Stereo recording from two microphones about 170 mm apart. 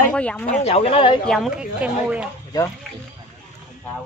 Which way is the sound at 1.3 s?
Centre (ahead or behind).